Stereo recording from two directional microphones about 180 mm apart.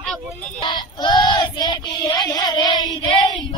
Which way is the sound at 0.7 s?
25° left (ahead or behind).